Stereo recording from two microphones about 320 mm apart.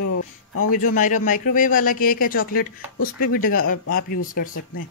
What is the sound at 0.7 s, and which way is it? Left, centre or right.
Speech, left.